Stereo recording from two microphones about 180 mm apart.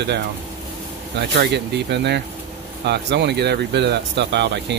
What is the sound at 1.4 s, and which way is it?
Speech, 70° right (ahead or behind).